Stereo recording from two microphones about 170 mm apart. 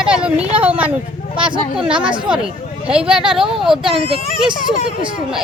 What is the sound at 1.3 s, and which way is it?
Speech, 30° right (ahead or behind).